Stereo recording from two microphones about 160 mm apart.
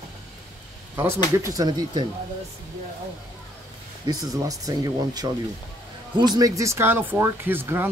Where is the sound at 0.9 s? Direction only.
15° right (ahead or behind).